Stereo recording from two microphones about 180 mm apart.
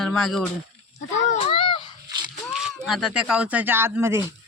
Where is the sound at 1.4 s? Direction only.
25° left (ahead or behind).